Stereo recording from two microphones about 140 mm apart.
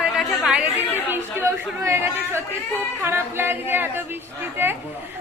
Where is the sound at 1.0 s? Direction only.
20° right (ahead or behind).